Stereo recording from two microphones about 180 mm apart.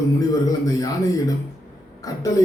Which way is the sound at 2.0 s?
20° left (ahead or behind).